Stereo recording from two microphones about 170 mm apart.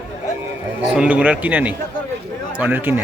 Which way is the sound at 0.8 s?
5° right (ahead or behind).